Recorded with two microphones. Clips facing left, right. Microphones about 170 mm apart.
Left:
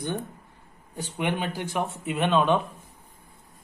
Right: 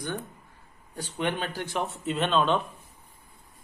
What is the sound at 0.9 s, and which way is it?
Speech, 15° left (ahead or behind).